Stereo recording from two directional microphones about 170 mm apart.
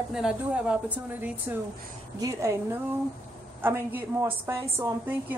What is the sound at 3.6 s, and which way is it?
A woman's voice, 15° right (ahead or behind).